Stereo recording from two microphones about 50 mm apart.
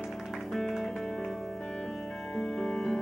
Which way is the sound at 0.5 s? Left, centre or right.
Centre.